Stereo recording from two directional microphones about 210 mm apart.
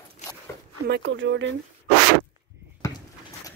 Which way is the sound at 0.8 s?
55° right (ahead or behind).